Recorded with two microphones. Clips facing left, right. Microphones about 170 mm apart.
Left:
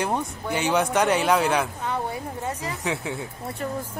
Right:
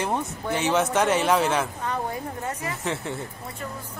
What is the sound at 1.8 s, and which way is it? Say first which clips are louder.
Speech: even; 15° left (ahead or behind).